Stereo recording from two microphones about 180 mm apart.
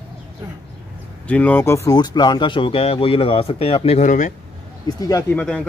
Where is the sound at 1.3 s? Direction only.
10° left (ahead or behind); by 4.3 s 45° left (ahead or behind).